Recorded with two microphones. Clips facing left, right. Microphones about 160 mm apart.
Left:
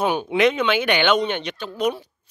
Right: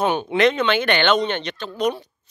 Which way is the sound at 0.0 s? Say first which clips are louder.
Right 1 dB; 5° left (ahead or behind).